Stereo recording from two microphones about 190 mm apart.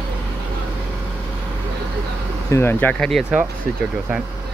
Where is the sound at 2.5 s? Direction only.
10° left (ahead or behind).